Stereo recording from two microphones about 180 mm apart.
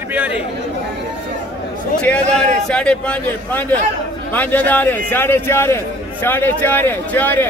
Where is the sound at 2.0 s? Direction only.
5° left (ahead or behind).